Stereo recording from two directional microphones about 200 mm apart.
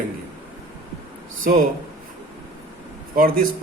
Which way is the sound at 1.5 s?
50° right (ahead or behind).